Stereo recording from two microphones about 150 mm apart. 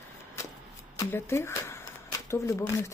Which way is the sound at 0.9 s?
15° left (ahead or behind).